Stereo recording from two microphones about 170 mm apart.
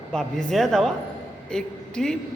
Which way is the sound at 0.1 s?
5° left (ahead or behind).